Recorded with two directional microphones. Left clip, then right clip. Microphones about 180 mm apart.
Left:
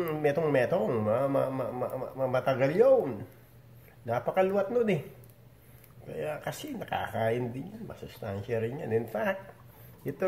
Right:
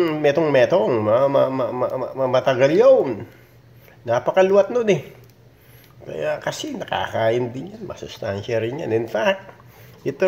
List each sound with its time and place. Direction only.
0.0 s a man's voice: 40° right (ahead or behind)
6.0 s speech: 35° right (ahead or behind)